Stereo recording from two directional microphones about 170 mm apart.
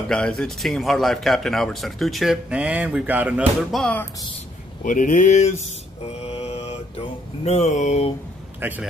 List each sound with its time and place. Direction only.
0.1 s speech: 5° left (ahead or behind)
3.8 s speech: 10° left (ahead or behind)
4.8 s speech: 50° left (ahead or behind)
6.0 s mantra: 35° left (ahead or behind)
8.5 s a man's voice: 10° right (ahead or behind)